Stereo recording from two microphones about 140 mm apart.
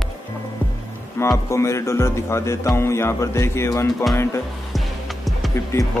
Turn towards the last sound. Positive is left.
turn(degrees=20)  # may be behind; listen again after turning